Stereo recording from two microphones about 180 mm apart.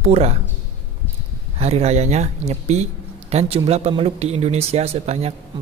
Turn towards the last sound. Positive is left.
turn(degrees=-35)  # may be behind; listen again after turning